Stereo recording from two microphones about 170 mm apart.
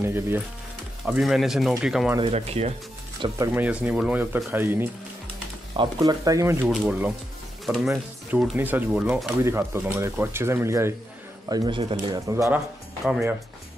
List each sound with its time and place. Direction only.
0.0 s speech: 15° right (ahead or behind)
1.0 s speech: centre (ahead or behind)
2.1 s speech: 35° right (ahead or behind)
3.2 s speech: 25° right (ahead or behind)
3.5 s speech: 10° right (ahead or behind)
6.6 s speech: 5° right (ahead or behind)
7.9 s speech: 10° right (ahead or behind)
9.4 s speech: 15° right (ahead or behind)